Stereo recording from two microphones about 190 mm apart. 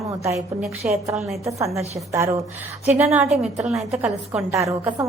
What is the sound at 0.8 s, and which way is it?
Speech, 10° right (ahead or behind).